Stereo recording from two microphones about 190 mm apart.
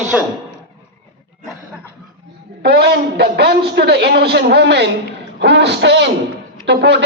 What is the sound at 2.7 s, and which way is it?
A man's voice, 55° right (ahead or behind).